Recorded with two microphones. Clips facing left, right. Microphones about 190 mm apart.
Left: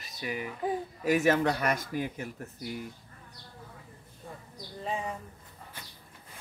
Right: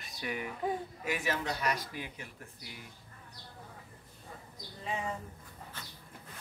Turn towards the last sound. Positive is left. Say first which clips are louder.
# even
turn(degrees=15)  # may be behind; listen again after turning